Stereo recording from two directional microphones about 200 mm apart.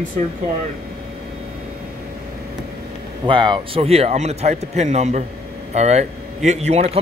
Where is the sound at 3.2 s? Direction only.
25° right (ahead or behind).